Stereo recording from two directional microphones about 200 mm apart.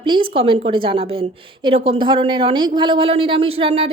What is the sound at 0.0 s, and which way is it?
A woman's voice, 25° right (ahead or behind).